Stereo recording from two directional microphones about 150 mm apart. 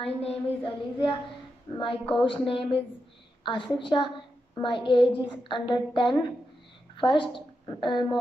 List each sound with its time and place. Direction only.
0.0 s a woman's voice: 40° left (ahead or behind)